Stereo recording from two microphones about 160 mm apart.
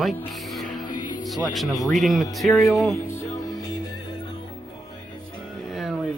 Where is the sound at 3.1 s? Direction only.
15° left (ahead or behind).